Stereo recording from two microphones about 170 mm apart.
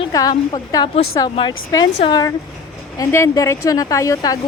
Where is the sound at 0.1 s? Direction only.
20° left (ahead or behind).